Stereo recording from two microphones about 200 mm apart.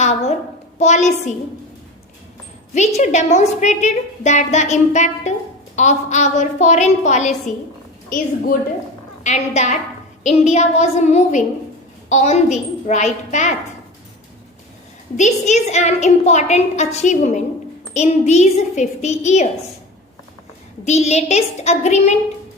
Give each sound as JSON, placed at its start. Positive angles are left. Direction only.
{"t": 0.0, "sound": "a child's voice", "side_deg": 35}
{"t": 2.7, "sound": "a woman's voice", "side_deg": 35}
{"t": 9.2, "sound": "a woman's voice", "side_deg": 35}
{"t": 15.1, "sound": "a woman's voice", "side_deg": 35}
{"t": 20.8, "sound": "a woman's voice", "side_deg": 35}